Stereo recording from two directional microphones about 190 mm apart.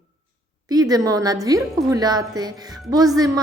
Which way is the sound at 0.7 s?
20° right (ahead or behind).